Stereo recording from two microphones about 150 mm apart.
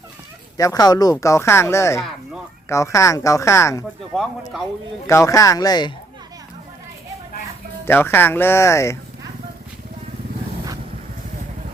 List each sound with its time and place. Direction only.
0.5 s speech: 25° left (ahead or behind)
2.0 s speech: centre (ahead or behind)
2.6 s speech: 20° left (ahead or behind)
4.1 s speech: centre (ahead or behind)
5.0 s speech: 20° left (ahead or behind)
7.9 s speech: 15° left (ahead or behind)